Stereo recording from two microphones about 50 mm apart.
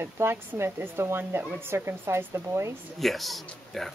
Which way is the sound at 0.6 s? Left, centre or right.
Right.